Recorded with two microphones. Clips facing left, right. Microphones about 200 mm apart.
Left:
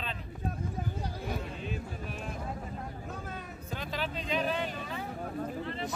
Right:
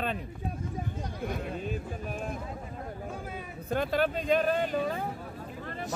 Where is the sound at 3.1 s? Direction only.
10° right (ahead or behind).